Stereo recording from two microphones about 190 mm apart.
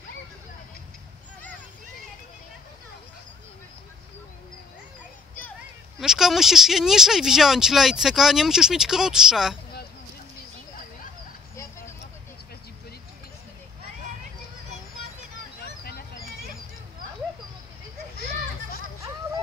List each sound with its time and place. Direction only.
5.9 s speech: centre (ahead or behind)
15.8 s a sound: 55° left (ahead or behind)
18.1 s children playing: 55° left (ahead or behind)